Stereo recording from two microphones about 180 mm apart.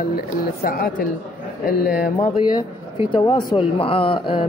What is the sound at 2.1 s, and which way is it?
Speech, 25° left (ahead or behind).